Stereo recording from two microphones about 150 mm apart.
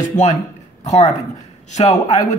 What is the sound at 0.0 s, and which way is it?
Speech, 55° left (ahead or behind).